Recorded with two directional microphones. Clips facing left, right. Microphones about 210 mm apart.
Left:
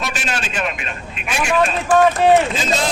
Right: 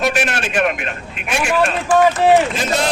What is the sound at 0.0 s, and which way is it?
Speech, 60° right (ahead or behind).